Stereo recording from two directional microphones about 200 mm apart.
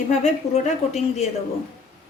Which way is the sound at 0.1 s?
35° left (ahead or behind).